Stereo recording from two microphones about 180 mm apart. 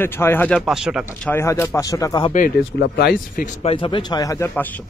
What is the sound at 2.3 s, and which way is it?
Speech, 55° left (ahead or behind).